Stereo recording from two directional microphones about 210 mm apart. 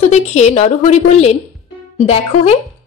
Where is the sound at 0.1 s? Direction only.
35° left (ahead or behind).